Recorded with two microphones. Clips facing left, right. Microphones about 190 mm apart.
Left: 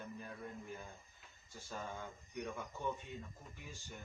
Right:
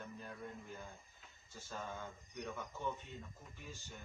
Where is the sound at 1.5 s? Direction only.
15° left (ahead or behind).